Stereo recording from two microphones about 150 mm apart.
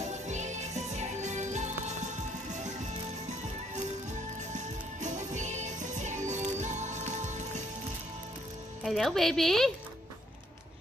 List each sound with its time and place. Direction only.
0.3 s music: 50° right (ahead or behind)
4.5 s music: 55° right (ahead or behind)
8.8 s a woman's voice: centre (ahead or behind)